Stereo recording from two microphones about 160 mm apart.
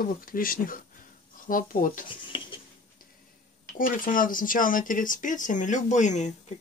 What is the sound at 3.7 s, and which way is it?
Speech, 60° left (ahead or behind).